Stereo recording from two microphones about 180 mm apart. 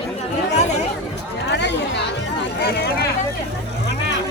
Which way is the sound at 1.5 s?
70° left (ahead or behind).